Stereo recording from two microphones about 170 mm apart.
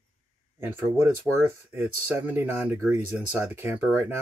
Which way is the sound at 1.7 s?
15° right (ahead or behind).